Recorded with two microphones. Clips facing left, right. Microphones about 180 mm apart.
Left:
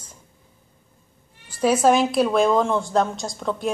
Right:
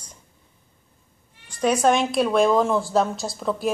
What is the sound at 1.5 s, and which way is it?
A woman's voice, 5° left (ahead or behind).